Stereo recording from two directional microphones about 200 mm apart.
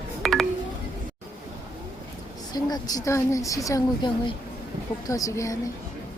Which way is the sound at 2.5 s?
20° left (ahead or behind).